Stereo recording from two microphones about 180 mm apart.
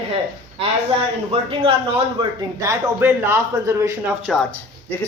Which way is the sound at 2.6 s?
10° right (ahead or behind).